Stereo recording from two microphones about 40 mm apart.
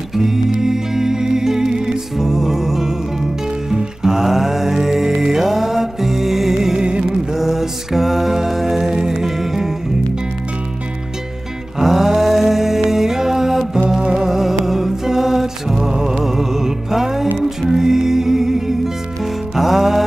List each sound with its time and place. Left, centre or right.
0.1 s music: centre
6.8 s music: right
7.1 s music: centre
11.8 s mantra: centre
13.8 s music: centre